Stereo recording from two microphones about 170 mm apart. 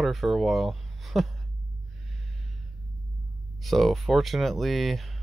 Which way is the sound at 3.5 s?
Centre (ahead or behind).